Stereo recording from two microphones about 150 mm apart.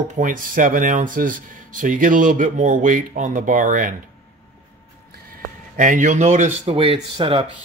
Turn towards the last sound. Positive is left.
turn(degrees=-35)  # may be behind; listen again after turning